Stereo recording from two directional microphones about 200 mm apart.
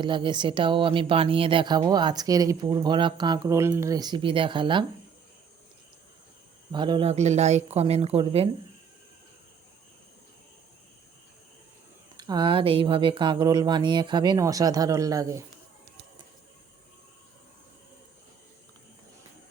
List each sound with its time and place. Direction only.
0.0 s speech: 25° right (ahead or behind)
6.7 s speech: 25° right (ahead or behind)
12.1 s speech: 20° right (ahead or behind)